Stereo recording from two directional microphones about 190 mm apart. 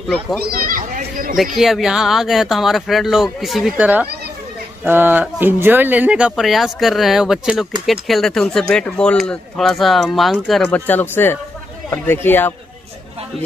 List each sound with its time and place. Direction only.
0.4 s children playing: 50° right (ahead or behind)
1.3 s speech: centre (ahead or behind)